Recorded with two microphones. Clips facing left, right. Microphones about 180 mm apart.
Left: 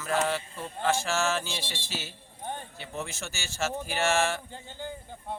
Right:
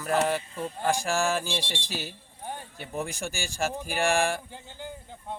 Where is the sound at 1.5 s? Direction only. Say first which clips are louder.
Right 5 dB; 60° right (ahead or behind).